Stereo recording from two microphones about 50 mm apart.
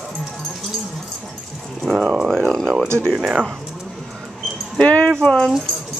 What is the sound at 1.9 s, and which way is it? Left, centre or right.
Speech, centre.